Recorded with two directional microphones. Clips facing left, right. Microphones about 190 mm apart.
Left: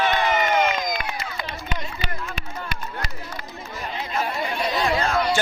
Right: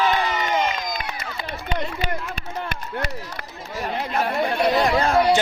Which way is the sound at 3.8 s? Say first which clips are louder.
Right 3 dB; 60° right (ahead or behind).